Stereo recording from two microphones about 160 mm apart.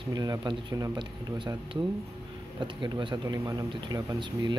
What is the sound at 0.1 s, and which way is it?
Speech, 25° right (ahead or behind).